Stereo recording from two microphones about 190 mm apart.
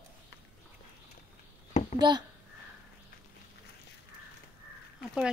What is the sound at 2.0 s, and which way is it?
Speech, 20° right (ahead or behind).